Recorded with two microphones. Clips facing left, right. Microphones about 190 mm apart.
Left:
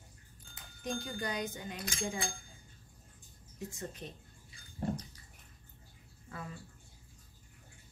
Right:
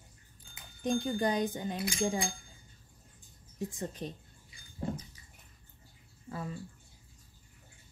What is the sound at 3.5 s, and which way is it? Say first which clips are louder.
Speech: right 5 dB; 35° right (ahead or behind).